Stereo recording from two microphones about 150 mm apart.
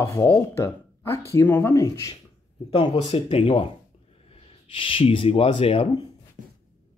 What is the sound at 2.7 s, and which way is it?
Speech, 30° left (ahead or behind).